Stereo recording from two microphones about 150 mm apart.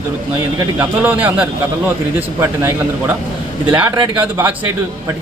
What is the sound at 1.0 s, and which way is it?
Speech, 10° right (ahead or behind).